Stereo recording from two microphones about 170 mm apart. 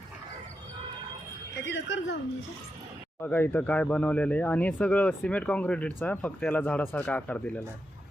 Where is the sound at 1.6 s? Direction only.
90° left.